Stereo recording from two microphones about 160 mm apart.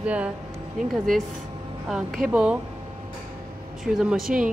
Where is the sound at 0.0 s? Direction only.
10° right (ahead or behind).